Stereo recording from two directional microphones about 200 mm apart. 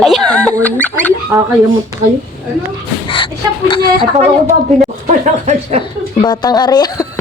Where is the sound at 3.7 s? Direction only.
20° left (ahead or behind).